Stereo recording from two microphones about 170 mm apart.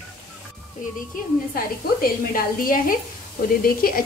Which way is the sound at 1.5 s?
55° left (ahead or behind).